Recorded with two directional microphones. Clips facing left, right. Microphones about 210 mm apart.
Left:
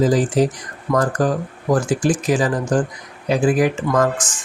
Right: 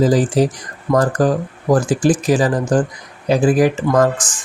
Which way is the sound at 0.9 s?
25° right (ahead or behind).